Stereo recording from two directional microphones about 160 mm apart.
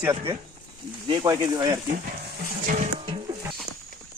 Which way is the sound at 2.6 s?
45° right (ahead or behind).